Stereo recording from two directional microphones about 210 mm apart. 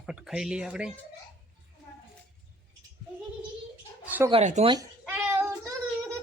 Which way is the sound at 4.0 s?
10° right (ahead or behind).